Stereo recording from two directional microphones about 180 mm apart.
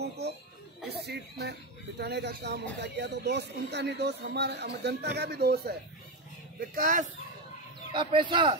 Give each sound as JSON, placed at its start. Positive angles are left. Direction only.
{"t": 0.8, "sound": "speech", "side_deg": -65}
{"t": 6.7, "sound": "speech", "side_deg": -50}
{"t": 7.9, "sound": "speech", "side_deg": -25}